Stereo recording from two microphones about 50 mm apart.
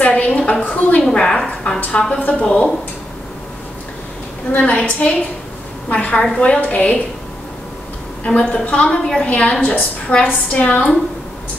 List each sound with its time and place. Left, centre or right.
0.0 s a sound: left
0.7 s a woman's voice: left
1.1 s a woman's voice: centre
4.5 s a woman's voice: left
8.5 s a woman's voice: left